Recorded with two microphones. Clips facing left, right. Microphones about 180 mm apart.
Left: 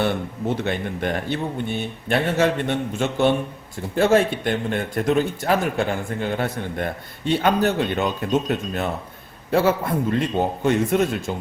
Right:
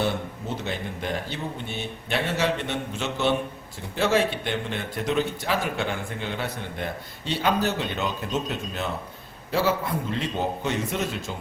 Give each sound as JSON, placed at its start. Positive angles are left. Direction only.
{"t": 0.5, "sound": "a man's voice", "side_deg": 60}